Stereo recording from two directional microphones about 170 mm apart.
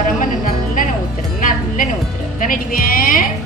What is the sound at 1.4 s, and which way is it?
Speech, 55° left (ahead or behind).